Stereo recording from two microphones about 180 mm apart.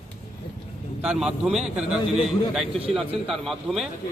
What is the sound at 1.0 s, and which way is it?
A man's voice, 5° right (ahead or behind).